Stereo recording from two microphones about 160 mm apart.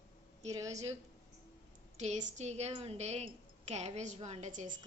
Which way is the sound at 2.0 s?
45° right (ahead or behind).